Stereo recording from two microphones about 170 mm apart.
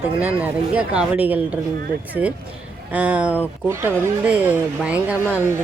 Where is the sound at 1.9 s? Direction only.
60° right (ahead or behind).